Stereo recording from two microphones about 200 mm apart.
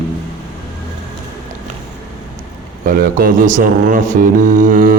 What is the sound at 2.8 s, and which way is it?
Speech, 45° right (ahead or behind).